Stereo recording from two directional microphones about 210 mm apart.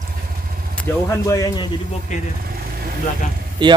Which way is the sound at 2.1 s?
35° left (ahead or behind).